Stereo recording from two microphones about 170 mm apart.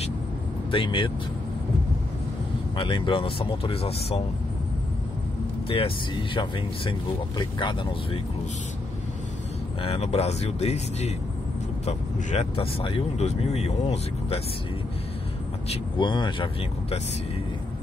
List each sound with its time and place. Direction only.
0.7 s speech: 30° left (ahead or behind)
2.7 s speech: 30° left (ahead or behind)
5.7 s speech: 30° left (ahead or behind)
9.8 s speech: 35° left (ahead or behind)
15.7 s speech: 30° left (ahead or behind)